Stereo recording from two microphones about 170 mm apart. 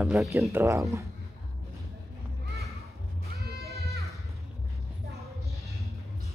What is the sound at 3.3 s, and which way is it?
Goat, 65° right (ahead or behind).